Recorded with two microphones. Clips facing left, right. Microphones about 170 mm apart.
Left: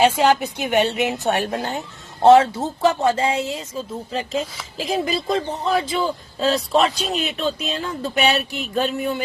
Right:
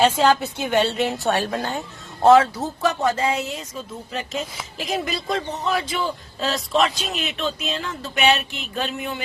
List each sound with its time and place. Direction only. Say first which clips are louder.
0.0 s a woman's voice: left 1 dB; 15° left (ahead or behind)
2.2 s speech: left 2 dB; 30° left (ahead or behind)